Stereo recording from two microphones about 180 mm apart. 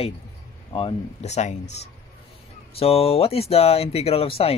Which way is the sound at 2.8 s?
35° left (ahead or behind).